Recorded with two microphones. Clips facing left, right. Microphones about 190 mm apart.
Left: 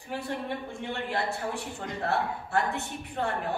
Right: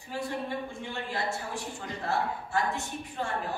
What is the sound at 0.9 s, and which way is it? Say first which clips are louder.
Speech: left 2 dB; 60° left (ahead or behind).